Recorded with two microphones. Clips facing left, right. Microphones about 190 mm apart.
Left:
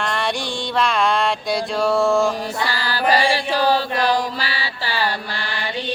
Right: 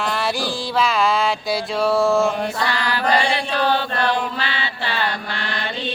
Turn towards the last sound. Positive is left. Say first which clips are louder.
# even
turn(degrees=35)  # may be behind; listen again after turning